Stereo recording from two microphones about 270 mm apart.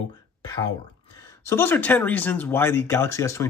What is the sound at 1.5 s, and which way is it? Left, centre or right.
Speech, centre.